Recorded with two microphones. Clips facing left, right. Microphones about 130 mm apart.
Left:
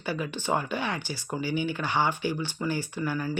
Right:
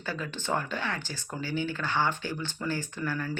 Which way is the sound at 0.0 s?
15° left (ahead or behind).